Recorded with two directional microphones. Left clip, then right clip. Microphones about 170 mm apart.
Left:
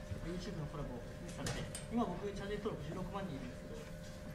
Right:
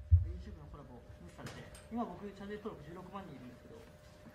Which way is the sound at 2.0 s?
35° left (ahead or behind).